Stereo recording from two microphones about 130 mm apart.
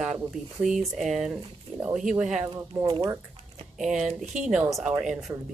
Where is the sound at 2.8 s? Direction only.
40° right (ahead or behind).